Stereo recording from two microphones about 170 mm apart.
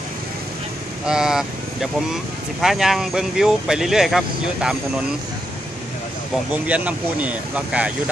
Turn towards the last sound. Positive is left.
turn(degrees=-5)  # may be behind; listen again after turning